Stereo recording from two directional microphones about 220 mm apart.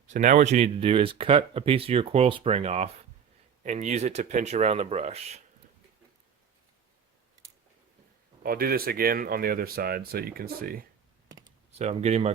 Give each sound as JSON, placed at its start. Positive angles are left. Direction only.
{"t": 0.1, "sound": "speech", "side_deg": -35}
{"t": 8.4, "sound": "speech", "side_deg": -40}
{"t": 11.3, "sound": "computer keyboard", "side_deg": -15}
{"t": 11.8, "sound": "speech", "side_deg": -30}